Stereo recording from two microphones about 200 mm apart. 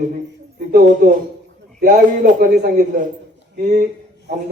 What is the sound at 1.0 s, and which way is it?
A man's voice, 40° right (ahead or behind).